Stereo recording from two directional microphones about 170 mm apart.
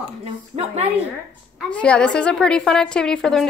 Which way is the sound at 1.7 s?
5° left (ahead or behind).